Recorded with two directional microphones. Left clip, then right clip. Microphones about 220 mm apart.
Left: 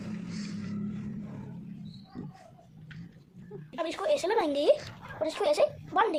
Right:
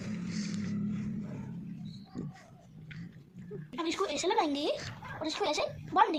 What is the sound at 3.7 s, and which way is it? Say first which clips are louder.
Speech: left 5 dB; 35° left (ahead or behind).